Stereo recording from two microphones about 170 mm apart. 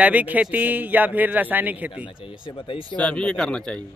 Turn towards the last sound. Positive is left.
turn(degrees=5)  # may be behind; listen again after turning